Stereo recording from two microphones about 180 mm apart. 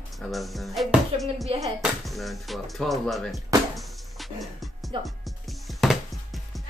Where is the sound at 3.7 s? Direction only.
Centre (ahead or behind).